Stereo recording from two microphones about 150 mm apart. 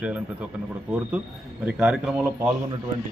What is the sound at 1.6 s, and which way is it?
Speech, 5° right (ahead or behind).